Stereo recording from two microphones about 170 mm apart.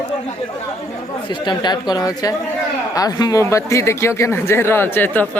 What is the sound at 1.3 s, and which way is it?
Speech, 25° left (ahead or behind).